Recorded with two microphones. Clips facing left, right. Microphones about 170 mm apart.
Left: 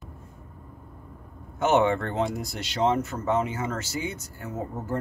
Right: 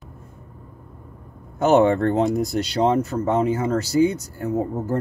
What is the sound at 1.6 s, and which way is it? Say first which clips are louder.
Speech: right 6 dB; 40° right (ahead or behind).